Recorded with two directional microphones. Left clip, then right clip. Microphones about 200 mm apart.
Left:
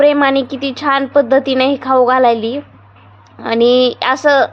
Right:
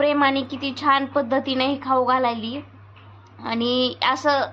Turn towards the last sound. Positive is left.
turn(degrees=30)  # may be behind; listen again after turning